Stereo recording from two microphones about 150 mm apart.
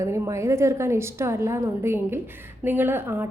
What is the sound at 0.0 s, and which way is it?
A woman's voice, 20° right (ahead or behind).